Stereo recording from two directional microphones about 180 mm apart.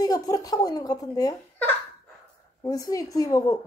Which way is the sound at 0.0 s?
20° left (ahead or behind).